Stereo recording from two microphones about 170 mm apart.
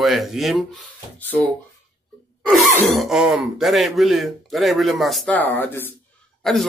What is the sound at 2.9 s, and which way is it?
Speech, 5° right (ahead or behind).